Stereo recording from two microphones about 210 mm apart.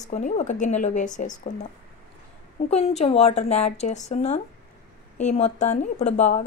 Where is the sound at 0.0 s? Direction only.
35° left (ahead or behind).